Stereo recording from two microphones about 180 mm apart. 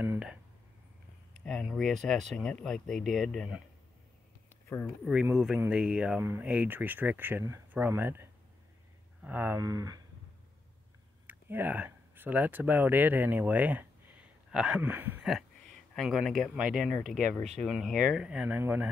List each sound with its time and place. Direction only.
0.0 s a sound: 10° right (ahead or behind)
1.4 s speech: 5° left (ahead or behind)
5.0 s speech: 5° right (ahead or behind); by 10.0 s 20° right (ahead or behind)
11.2 s speech: 10° right (ahead or behind)
15.9 s speech: centre (ahead or behind)